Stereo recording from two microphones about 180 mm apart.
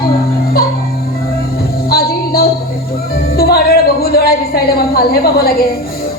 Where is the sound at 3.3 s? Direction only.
60° left (ahead or behind).